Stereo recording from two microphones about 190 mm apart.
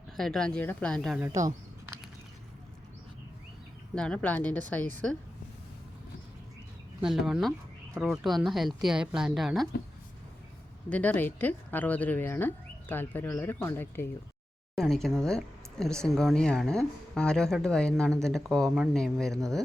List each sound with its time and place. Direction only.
0.2 s a woman's voice: 5° left (ahead or behind)
1.2 s speech: 15° right (ahead or behind)
3.9 s speech: 5° left (ahead or behind)
7.0 s a woman's voice: centre (ahead or behind)
10.8 s speech: 5° left (ahead or behind)
14.8 s a woman's voice: centre (ahead or behind)